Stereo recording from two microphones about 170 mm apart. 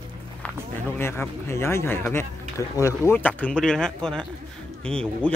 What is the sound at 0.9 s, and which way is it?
Speech, 15° left (ahead or behind).